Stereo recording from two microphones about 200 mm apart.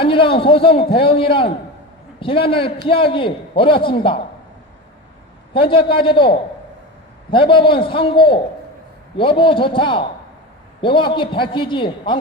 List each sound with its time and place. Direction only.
0.0 s a man's voice: 25° left (ahead or behind)
5.5 s a man's voice: 25° left (ahead or behind)